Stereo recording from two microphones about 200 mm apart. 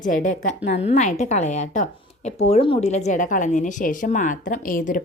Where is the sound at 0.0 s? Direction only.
40° left (ahead or behind).